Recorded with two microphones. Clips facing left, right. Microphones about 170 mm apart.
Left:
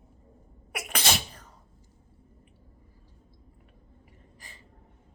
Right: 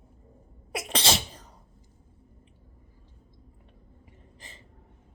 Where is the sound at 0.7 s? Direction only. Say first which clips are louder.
Right 2 dB; 25° right (ahead or behind).